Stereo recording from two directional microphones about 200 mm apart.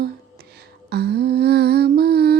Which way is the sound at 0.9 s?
55° right (ahead or behind).